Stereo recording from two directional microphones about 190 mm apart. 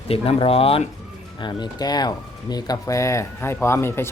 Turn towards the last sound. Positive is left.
turn(degrees=10)  # may be behind; listen again after turning